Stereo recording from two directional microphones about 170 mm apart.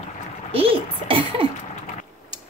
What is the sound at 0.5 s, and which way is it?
Speech, 35° right (ahead or behind).